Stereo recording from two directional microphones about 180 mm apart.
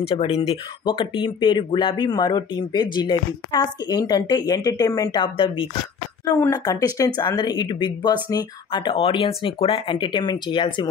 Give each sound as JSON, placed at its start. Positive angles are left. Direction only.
{"t": 0.0, "sound": "speech", "side_deg": 35}